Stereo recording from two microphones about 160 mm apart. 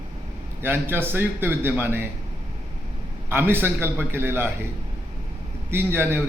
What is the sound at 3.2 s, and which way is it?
A man's voice, 15° right (ahead or behind).